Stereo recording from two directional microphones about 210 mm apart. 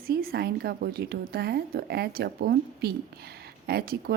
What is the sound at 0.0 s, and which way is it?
Speech, 45° right (ahead or behind).